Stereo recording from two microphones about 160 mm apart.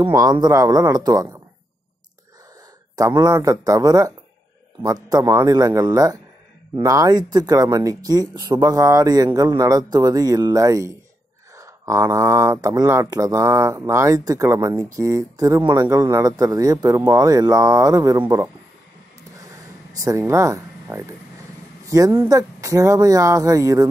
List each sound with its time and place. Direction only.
0.0 s speech: 25° right (ahead or behind)
3.0 s speech: 25° right (ahead or behind)
19.9 s speech: 20° right (ahead or behind)